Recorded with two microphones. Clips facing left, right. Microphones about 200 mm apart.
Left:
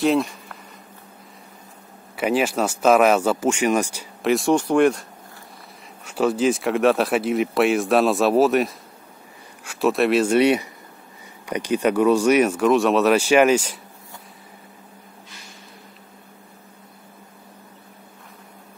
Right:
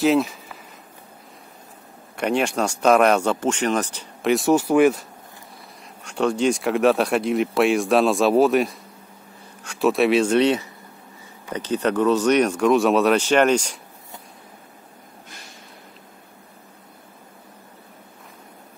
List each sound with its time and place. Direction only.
0.0 s speech: centre (ahead or behind)
2.1 s speech: 5° left (ahead or behind)
6.0 s speech: 5° left (ahead or behind)